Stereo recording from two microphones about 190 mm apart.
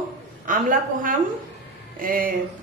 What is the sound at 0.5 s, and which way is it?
Speech, 45° right (ahead or behind).